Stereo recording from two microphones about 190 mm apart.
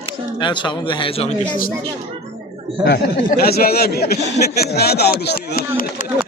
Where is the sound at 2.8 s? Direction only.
60° left (ahead or behind).